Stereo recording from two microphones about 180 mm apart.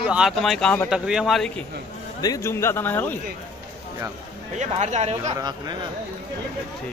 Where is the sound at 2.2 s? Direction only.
15° left (ahead or behind).